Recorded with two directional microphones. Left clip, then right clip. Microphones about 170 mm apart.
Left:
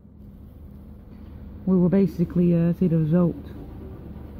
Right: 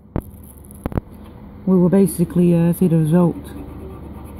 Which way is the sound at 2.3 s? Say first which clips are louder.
Right 5 dB; 15° right (ahead or behind).